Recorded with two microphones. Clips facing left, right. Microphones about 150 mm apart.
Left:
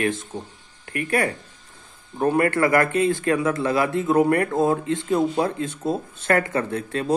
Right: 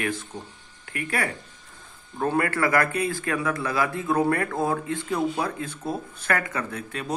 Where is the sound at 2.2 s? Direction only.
20° left (ahead or behind).